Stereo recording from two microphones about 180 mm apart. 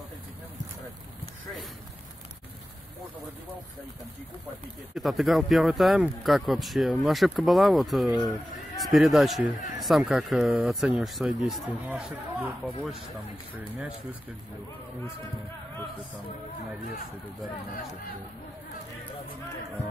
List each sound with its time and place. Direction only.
4.9 s speech: centre (ahead or behind)